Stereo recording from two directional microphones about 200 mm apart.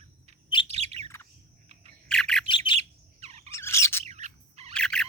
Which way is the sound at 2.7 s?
30° right (ahead or behind).